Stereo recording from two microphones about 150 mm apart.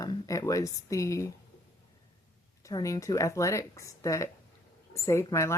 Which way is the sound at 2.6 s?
20° left (ahead or behind).